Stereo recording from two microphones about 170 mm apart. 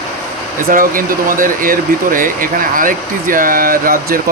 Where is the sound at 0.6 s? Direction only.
55° right (ahead or behind).